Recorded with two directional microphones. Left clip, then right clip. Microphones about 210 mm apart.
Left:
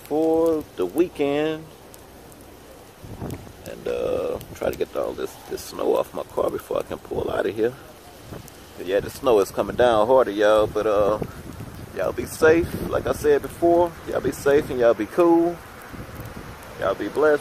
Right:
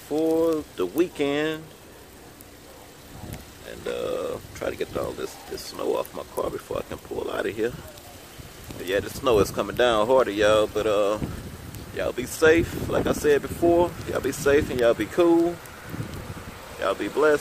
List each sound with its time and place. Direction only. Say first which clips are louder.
0.1 s speech: left 3 dB; 5° right (ahead or behind)
3.8 s speech: left 4 dB; 5° left (ahead or behind)
8.8 s speech: left 3 dB; centre (ahead or behind)
16.8 s speech: left 2 dB; 15° right (ahead or behind)